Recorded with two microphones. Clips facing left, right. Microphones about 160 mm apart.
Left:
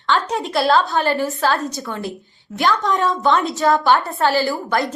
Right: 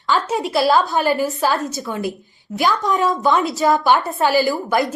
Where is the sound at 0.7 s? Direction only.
15° right (ahead or behind).